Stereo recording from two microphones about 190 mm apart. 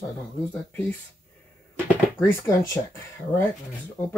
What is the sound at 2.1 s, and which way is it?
Speech, 15° left (ahead or behind).